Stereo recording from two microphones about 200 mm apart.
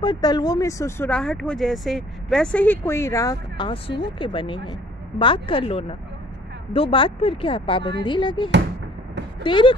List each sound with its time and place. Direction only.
0.0 s speech: 20° left (ahead or behind)